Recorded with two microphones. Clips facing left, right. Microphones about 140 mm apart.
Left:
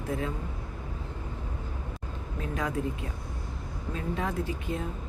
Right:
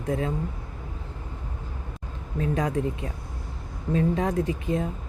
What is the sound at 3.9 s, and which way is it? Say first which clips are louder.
Speech: right 8 dB; 35° right (ahead or behind).